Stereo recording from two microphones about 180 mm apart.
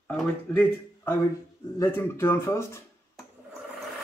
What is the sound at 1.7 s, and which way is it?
Speech, 10° left (ahead or behind).